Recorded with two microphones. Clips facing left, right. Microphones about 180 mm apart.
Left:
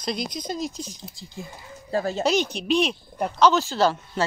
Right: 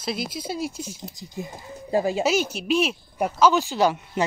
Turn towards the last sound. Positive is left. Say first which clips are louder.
# even
turn(degrees=-15)  # may be behind; listen again after turning